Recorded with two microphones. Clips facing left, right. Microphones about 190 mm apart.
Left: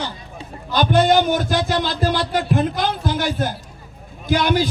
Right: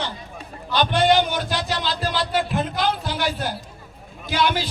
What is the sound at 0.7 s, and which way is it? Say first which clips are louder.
A man's voice: left 3 dB; 45° left (ahead or behind).